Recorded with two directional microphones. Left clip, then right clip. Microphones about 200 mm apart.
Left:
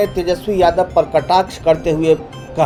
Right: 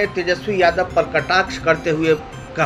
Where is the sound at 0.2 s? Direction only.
30° left (ahead or behind).